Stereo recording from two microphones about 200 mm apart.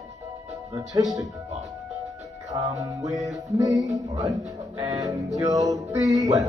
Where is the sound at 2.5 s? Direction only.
15° right (ahead or behind).